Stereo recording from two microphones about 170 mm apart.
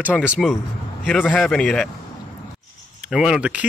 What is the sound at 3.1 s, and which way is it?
Speech, 5° right (ahead or behind).